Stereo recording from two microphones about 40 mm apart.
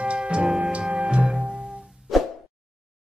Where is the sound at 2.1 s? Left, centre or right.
Centre.